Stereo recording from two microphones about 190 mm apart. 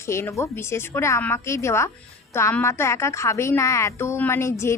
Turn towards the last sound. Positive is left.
turn(degrees=15)  # may be behind; listen again after turning